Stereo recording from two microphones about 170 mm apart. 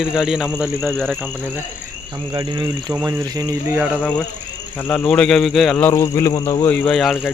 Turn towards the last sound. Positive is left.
turn(degrees=0)  # may be behind; listen again after turning